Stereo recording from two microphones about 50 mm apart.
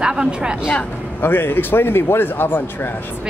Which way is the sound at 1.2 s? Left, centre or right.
Left.